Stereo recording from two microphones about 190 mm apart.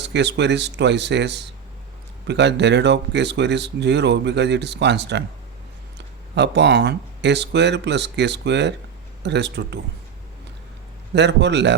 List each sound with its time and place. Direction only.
0.0 s speech: 65° right (ahead or behind)
11.1 s speech: 65° right (ahead or behind)